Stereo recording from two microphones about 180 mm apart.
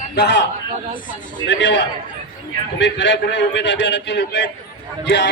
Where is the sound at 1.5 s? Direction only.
90° left.